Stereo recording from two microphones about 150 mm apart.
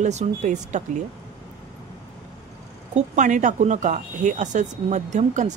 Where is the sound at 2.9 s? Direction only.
55° right (ahead or behind).